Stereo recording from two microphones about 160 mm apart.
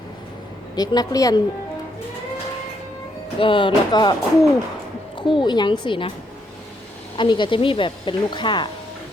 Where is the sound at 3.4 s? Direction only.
30° left (ahead or behind).